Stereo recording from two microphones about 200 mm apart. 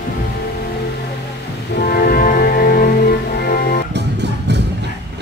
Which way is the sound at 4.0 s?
60° right (ahead or behind).